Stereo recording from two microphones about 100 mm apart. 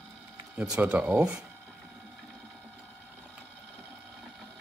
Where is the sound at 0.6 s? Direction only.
10° right (ahead or behind).